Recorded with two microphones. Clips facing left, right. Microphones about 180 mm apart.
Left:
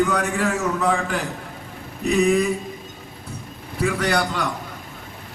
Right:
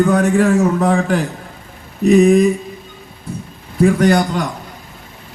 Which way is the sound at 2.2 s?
45° right (ahead or behind).